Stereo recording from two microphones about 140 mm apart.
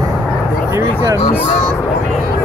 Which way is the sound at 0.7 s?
25° right (ahead or behind).